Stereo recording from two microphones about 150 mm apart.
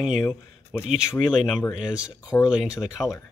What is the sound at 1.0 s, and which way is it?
Speech, 5° right (ahead or behind).